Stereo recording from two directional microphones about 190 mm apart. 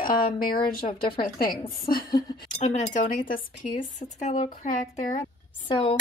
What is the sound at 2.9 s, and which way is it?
Speech, 45° left (ahead or behind).